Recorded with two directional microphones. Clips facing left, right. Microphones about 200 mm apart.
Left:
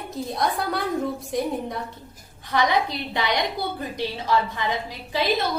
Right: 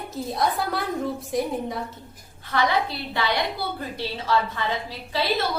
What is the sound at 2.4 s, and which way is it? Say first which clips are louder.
A woman's voice: left 1 dB; 15° left (ahead or behind).